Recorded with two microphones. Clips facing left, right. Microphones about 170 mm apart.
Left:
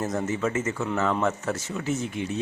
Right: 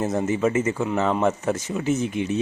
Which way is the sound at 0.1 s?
20° right (ahead or behind).